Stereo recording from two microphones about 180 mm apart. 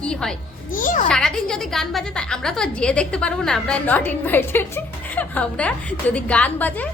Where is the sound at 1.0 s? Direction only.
5° left (ahead or behind).